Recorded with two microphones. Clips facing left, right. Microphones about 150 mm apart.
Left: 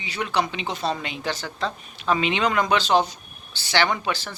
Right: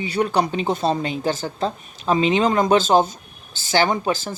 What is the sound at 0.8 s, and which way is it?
Speech, 30° right (ahead or behind).